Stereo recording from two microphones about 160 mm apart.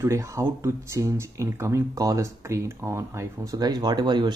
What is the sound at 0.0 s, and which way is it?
Speech, 15° right (ahead or behind).